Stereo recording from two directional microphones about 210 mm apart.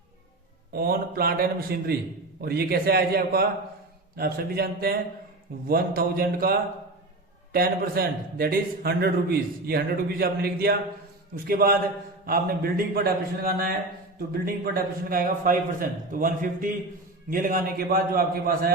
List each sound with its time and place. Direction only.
0.7 s a man's voice: 45° right (ahead or behind)